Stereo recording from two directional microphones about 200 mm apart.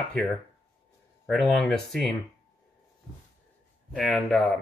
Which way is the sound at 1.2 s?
Centre (ahead or behind).